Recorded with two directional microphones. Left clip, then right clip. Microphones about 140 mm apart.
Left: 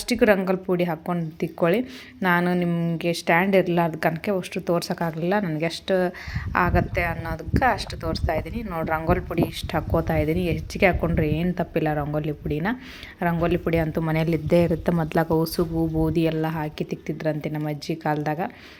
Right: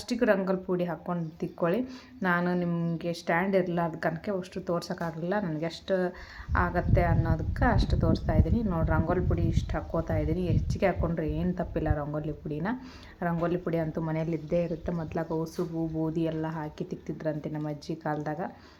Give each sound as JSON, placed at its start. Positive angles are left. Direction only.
{"t": 0.1, "sound": "a woman's voice", "side_deg": 25}
{"t": 9.1, "sound": "a woman's voice", "side_deg": 45}
{"t": 15.5, "sound": "a woman's voice", "side_deg": 30}